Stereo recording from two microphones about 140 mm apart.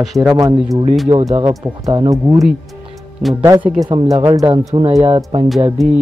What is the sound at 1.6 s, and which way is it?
Speech, 30° right (ahead or behind).